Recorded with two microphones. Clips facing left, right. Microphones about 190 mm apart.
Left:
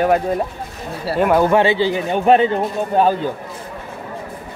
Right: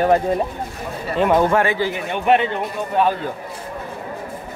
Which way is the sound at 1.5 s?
25° left (ahead or behind).